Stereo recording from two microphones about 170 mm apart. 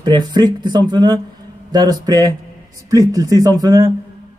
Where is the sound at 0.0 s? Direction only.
25° right (ahead or behind).